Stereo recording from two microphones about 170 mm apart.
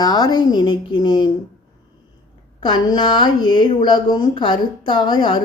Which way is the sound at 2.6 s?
25° left (ahead or behind).